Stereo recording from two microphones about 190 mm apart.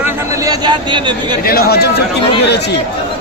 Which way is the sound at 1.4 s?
55° left (ahead or behind).